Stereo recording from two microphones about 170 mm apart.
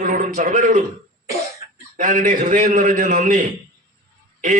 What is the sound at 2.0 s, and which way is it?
A man's voice, 50° right (ahead or behind).